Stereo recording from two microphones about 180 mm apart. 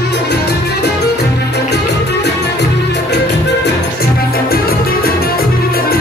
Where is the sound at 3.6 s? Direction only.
60° left (ahead or behind).